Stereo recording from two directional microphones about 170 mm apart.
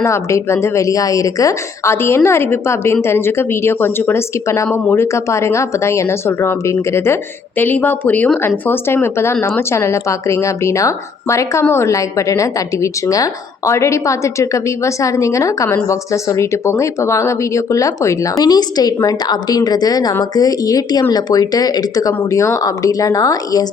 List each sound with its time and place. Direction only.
0.0 s a woman's voice: 15° left (ahead or behind)